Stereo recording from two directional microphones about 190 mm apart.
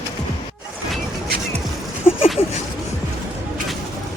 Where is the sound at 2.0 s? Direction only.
30° left (ahead or behind).